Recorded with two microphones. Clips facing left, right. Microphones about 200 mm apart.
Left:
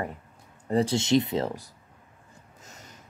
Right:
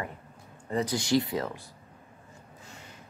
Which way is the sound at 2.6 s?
40° left (ahead or behind).